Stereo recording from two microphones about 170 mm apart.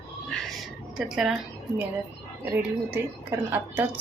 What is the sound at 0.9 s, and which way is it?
Speech, 5° right (ahead or behind).